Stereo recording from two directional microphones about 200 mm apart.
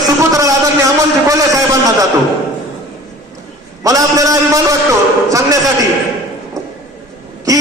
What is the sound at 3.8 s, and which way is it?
Speech, 15° right (ahead or behind).